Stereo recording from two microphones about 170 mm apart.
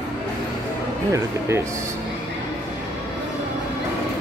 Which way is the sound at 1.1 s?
15° right (ahead or behind).